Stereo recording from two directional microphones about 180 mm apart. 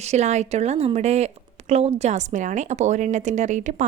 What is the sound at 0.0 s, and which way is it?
A woman's voice, 40° right (ahead or behind).